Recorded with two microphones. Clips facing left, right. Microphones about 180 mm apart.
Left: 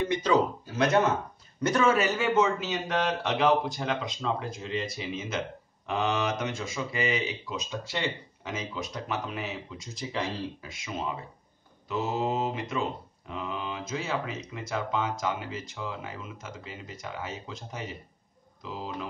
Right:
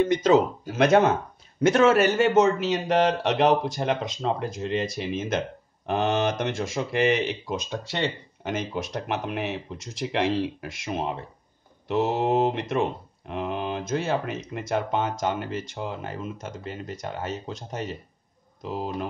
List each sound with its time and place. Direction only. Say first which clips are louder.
0.7 s speech: right 7 dB; 85° right
4.2 s speech: right 5 dB; 55° right (ahead or behind)
11.9 s speech: right 6 dB; 75° right (ahead or behind)
18.6 s speech: right 6 dB; 60° right (ahead or behind)